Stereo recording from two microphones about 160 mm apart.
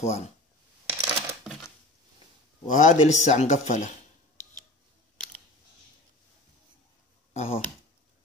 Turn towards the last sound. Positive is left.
turn(degrees=40)  # may be behind; listen again after turning